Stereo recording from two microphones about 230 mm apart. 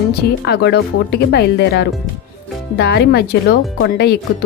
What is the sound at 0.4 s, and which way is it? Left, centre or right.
Speech, left.